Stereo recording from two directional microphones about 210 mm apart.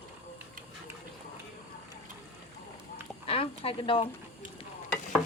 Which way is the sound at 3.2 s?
25° left (ahead or behind).